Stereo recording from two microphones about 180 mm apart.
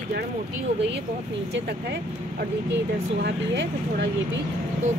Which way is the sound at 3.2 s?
85° right.